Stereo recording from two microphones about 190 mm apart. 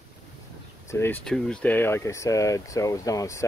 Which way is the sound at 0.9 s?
15° left (ahead or behind).